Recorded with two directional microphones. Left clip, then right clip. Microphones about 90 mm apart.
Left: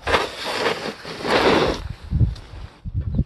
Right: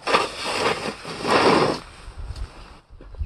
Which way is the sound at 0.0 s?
20° right (ahead or behind).